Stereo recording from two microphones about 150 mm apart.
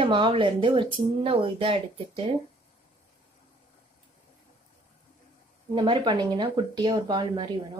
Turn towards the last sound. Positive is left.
turn(degrees=-30)  # may be behind; listen again after turning